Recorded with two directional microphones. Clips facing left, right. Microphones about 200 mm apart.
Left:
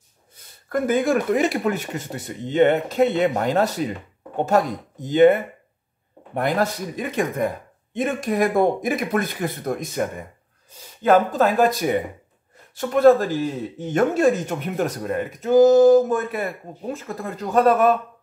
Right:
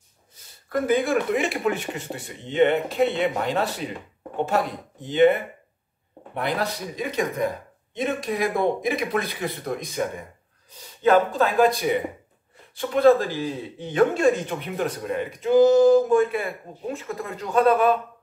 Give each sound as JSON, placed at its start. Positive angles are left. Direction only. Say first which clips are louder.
{"t": 0.7, "sound": "speech", "louder": "left 2 dB", "side_deg": 45}
{"t": 11.3, "sound": "speech", "louder": "left 1 dB", "side_deg": 45}